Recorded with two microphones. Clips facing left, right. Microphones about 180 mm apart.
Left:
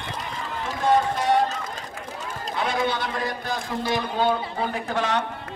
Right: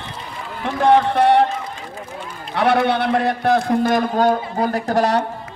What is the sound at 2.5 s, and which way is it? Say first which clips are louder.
A man's voice: right 9 dB; 65° right (ahead or behind).